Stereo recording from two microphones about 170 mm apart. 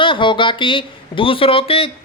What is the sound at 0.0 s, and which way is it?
A woman's voice, 30° left (ahead or behind).